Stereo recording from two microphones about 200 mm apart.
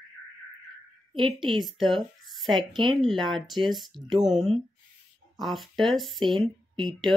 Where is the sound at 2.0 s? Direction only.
Centre (ahead or behind).